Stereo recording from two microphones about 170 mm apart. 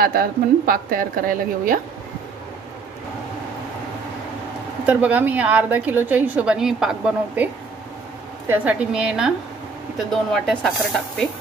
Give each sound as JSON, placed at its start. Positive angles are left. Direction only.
{"t": 0.0, "sound": "a woman's voice", "side_deg": -60}
{"t": 4.8, "sound": "a woman's voice", "side_deg": -10}
{"t": 8.5, "sound": "a woman's voice", "side_deg": -5}